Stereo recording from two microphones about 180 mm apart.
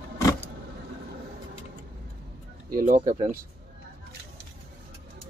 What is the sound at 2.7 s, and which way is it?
Speech, 45° right (ahead or behind).